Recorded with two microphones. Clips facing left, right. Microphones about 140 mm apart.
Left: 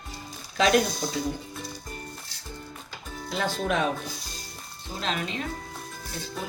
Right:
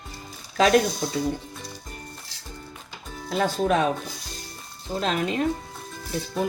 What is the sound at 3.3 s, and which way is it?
Speech, 40° right (ahead or behind).